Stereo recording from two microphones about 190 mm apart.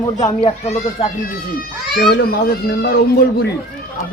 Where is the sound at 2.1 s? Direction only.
55° left (ahead or behind).